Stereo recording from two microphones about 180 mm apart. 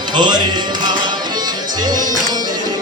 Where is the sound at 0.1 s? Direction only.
25° right (ahead or behind).